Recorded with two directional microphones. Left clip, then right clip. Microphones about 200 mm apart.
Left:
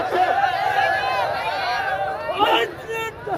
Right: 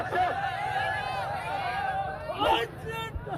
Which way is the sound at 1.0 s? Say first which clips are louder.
Left 10 dB; 35° right (ahead or behind).